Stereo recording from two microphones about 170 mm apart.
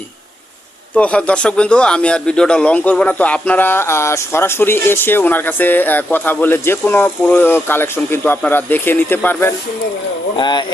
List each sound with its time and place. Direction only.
0.9 s speech: 5° left (ahead or behind)
10.3 s speech: 25° left (ahead or behind)